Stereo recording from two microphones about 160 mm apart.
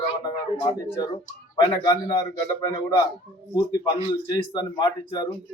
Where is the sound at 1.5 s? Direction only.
25° left (ahead or behind).